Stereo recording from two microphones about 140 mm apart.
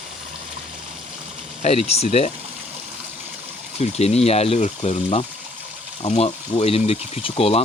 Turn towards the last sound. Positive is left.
turn(degrees=45)  # may be behind; listen again after turning